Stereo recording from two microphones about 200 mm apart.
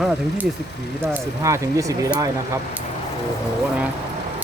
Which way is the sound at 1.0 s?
15° right (ahead or behind).